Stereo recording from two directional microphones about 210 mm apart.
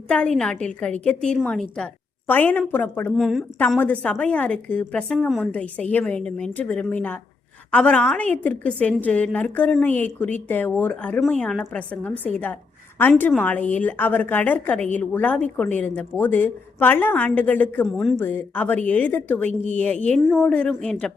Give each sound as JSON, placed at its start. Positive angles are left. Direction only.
{"t": 0.1, "sound": "a woman's voice", "side_deg": 5}